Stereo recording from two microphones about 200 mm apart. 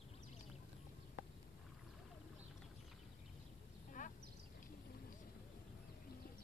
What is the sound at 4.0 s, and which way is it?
Quack, 40° left (ahead or behind).